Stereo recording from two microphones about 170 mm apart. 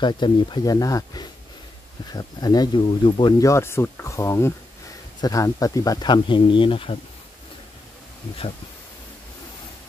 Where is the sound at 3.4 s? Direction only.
15° left (ahead or behind); by 6.9 s 30° left (ahead or behind).